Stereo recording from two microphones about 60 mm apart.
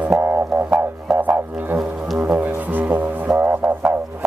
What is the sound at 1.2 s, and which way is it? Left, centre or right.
Music, right.